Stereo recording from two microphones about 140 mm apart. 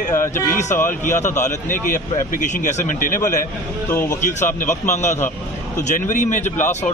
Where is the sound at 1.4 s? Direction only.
65° left (ahead or behind).